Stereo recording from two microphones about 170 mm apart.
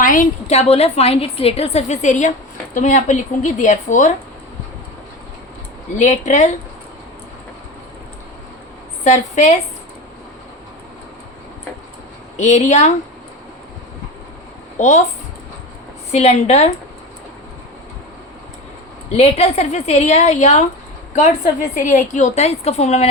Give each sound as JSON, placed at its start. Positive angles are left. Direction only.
{"t": 0.0, "sound": "a woman's voice", "side_deg": 50}
{"t": 6.0, "sound": "a woman's voice", "side_deg": 45}
{"t": 9.0, "sound": "a woman's voice", "side_deg": 45}
{"t": 12.4, "sound": "a woman's voice", "side_deg": 40}
{"t": 14.8, "sound": "a woman's voice", "side_deg": 45}
{"t": 16.1, "sound": "a woman's voice", "side_deg": 40}
{"t": 19.1, "sound": "a woman's voice", "side_deg": 40}